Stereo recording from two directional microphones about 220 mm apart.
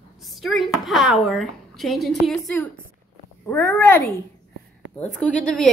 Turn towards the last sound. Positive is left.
turn(degrees=5)  # may be behind; listen again after turning